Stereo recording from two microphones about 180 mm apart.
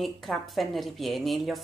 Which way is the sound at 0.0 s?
Centre (ahead or behind).